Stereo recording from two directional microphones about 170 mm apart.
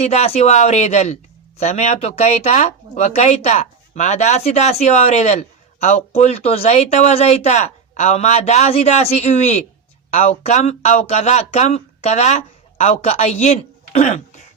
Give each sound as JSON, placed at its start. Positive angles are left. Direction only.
{"t": 0.0, "sound": "speech", "side_deg": 40}